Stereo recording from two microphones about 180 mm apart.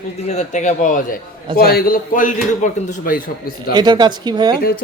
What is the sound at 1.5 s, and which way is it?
A man's voice, 55° left (ahead or behind).